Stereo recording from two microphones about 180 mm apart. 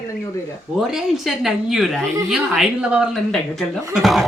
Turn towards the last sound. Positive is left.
turn(degrees=0)  # may be behind; listen again after turning